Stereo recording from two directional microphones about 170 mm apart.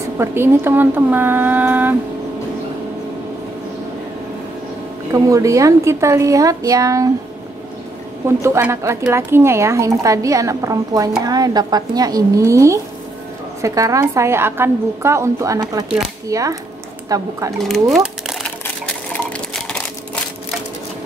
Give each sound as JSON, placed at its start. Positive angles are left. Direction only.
{"t": 0.2, "sound": "a woman's voice", "side_deg": -15}
{"t": 5.1, "sound": "speech", "side_deg": -20}
{"t": 8.4, "sound": "a woman's voice", "side_deg": -15}
{"t": 17.6, "sound": "speech", "side_deg": 0}
{"t": 19.1, "sound": "a sound", "side_deg": 5}